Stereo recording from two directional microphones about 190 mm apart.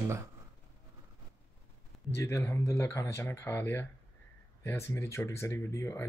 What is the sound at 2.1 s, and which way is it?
Speech, 15° left (ahead or behind).